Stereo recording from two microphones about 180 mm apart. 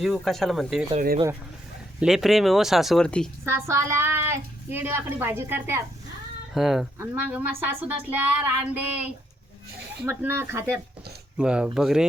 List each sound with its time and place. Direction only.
0.0 s speech: centre (ahead or behind)
0.9 s speech: 50° right (ahead or behind)
2.0 s speech: centre (ahead or behind)
3.4 s a woman's voice: 15° right (ahead or behind)
6.5 s speech: centre (ahead or behind)
7.0 s a woman's voice: 10° right (ahead or behind)